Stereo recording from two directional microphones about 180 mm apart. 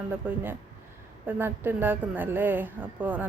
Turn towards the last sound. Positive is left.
turn(degrees=-10)  # may be behind; listen again after turning